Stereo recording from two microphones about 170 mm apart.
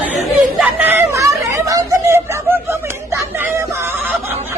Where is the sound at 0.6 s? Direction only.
10° right (ahead or behind).